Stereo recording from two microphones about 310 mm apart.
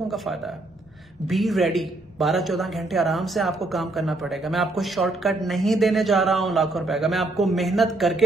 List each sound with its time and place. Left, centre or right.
0.1 s speech: centre